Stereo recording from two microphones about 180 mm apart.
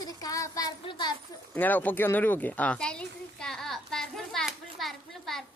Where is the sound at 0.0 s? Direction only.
20° left (ahead or behind).